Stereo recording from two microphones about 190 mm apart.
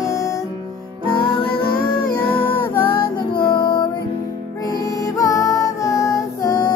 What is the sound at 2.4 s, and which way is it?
Music, 10° left (ahead or behind).